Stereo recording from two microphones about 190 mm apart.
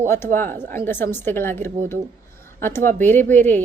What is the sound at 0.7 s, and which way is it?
Speech, 10° left (ahead or behind).